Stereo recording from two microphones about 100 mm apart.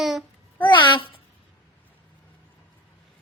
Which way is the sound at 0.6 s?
50° left (ahead or behind).